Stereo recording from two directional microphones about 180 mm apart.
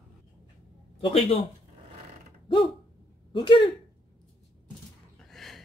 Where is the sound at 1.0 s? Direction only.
35° left (ahead or behind).